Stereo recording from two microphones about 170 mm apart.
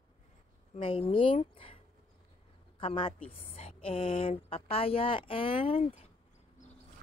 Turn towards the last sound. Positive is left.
turn(degrees=30)  # may be behind; listen again after turning